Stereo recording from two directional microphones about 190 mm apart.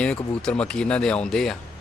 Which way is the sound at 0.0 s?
5° left (ahead or behind).